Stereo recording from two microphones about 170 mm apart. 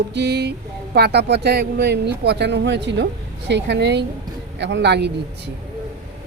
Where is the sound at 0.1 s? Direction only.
85° right.